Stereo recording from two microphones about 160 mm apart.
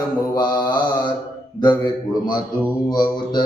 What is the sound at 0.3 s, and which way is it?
Mantra, 25° left (ahead or behind).